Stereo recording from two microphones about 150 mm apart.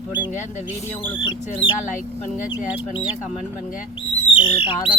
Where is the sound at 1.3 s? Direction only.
50° left (ahead or behind).